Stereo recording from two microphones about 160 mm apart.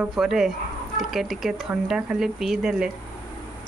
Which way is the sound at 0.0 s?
Centre (ahead or behind).